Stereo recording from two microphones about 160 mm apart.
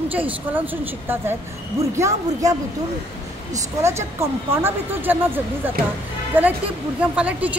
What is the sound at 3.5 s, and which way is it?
A woman's voice, 15° right (ahead or behind).